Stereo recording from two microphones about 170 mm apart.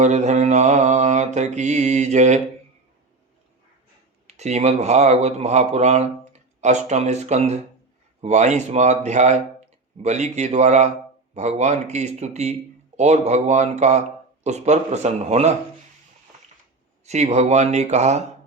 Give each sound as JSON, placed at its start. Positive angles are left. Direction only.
{"t": 0.0, "sound": "mantra", "side_deg": -40}
{"t": 4.3, "sound": "a man's voice", "side_deg": -40}
{"t": 8.2, "sound": "mantra", "side_deg": -45}
{"t": 11.3, "sound": "a man's voice", "side_deg": -45}
{"t": 13.0, "sound": "mantra", "side_deg": -40}
{"t": 14.4, "sound": "a man's voice", "side_deg": -40}
{"t": 17.1, "sound": "a man's voice", "side_deg": -40}